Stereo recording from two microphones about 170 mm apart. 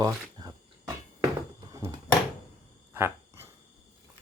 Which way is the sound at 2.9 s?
15° right (ahead or behind).